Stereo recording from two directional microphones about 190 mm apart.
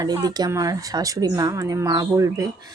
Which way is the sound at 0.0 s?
20° right (ahead or behind).